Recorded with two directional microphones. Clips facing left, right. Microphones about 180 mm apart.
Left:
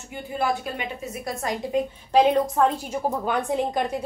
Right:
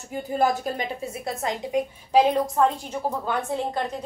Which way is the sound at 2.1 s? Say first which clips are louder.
Left 1 dB; centre (ahead or behind).